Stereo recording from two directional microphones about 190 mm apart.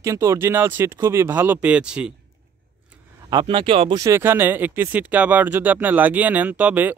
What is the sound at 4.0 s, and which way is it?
Speech, 15° right (ahead or behind).